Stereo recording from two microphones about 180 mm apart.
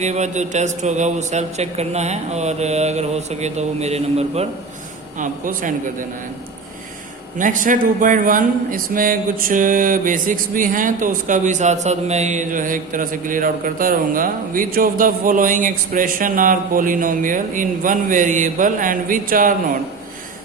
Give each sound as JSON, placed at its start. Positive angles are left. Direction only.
{"t": 0.0, "sound": "a man's voice", "side_deg": -40}
{"t": 5.1, "sound": "a man's voice", "side_deg": -45}
{"t": 7.3, "sound": "a man's voice", "side_deg": -45}